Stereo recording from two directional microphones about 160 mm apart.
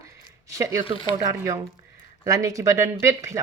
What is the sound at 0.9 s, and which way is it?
Speech, 35° left (ahead or behind).